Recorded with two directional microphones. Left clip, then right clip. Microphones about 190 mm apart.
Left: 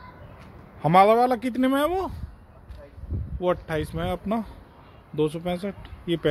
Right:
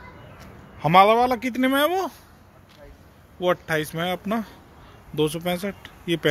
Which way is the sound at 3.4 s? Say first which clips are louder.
Right 3 dB; centre (ahead or behind).